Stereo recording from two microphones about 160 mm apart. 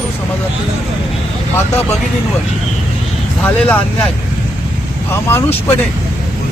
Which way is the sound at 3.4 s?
10° left (ahead or behind).